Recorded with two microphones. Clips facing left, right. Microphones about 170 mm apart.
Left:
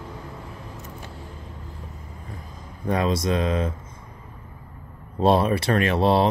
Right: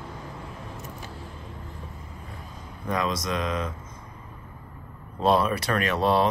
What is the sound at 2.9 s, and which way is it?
Speech, 30° left (ahead or behind).